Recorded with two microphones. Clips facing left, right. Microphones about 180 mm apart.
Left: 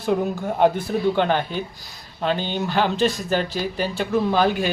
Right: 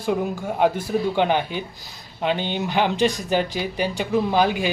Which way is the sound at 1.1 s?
15° right (ahead or behind).